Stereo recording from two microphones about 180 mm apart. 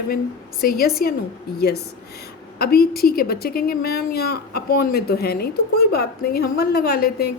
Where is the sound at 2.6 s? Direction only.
60° left (ahead or behind).